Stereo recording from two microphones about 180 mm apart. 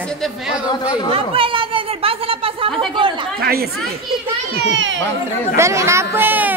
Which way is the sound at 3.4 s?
60° right (ahead or behind).